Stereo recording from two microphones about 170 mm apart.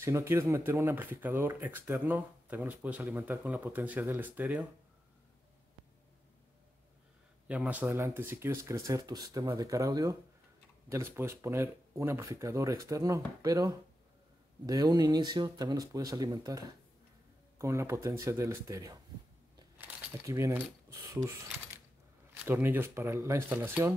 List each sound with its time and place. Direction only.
0.0 s speech: 15° right (ahead or behind)
7.4 s speech: 10° right (ahead or behind)
19.8 s keys jangling: 20° right (ahead or behind)
21.1 s speech: 15° right (ahead or behind)